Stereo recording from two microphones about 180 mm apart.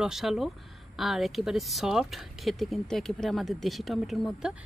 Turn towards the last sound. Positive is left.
turn(degrees=0)  # may be behind; listen again after turning